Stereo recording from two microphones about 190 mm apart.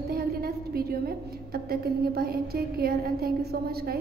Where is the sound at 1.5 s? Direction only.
55° right (ahead or behind).